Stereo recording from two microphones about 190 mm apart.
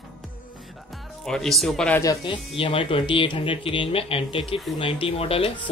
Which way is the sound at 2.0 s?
20° left (ahead or behind).